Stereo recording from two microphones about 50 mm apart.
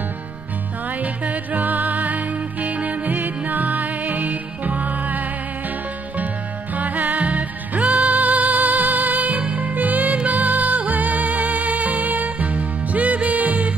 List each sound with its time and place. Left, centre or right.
0.8 s music: right